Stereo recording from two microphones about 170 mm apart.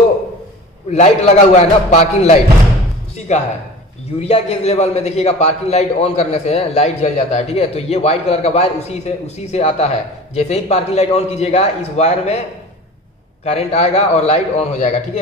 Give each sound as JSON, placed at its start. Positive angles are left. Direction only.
{"t": 0.8, "sound": "a man's voice", "side_deg": 40}
{"t": 13.4, "sound": "a man's voice", "side_deg": 40}